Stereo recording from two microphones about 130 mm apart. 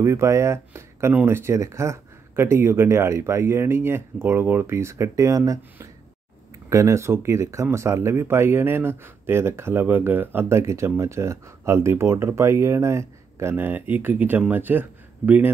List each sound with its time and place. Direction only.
0.0 s speech: 20° right (ahead or behind)